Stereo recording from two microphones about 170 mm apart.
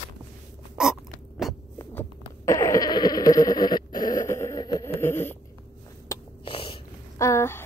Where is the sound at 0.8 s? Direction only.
Centre (ahead or behind).